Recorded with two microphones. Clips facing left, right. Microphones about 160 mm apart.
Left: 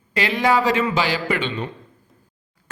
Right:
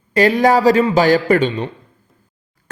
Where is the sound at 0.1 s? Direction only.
40° right (ahead or behind).